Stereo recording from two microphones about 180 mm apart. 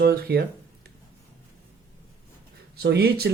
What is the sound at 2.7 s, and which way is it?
Speech, 60° right (ahead or behind).